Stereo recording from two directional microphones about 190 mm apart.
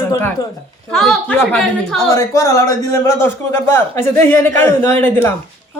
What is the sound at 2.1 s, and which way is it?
A man's voice, 15° left (ahead or behind).